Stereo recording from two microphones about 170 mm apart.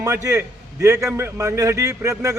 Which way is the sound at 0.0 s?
20° right (ahead or behind).